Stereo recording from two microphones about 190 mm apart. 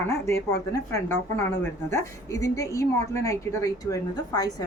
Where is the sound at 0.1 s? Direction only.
15° left (ahead or behind).